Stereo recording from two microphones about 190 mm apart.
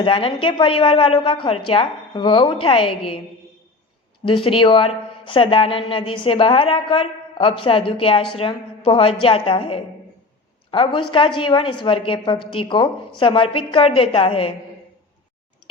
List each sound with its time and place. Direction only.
0.0 s a man's voice: 30° left (ahead or behind)
4.3 s a man's voice: 30° left (ahead or behind)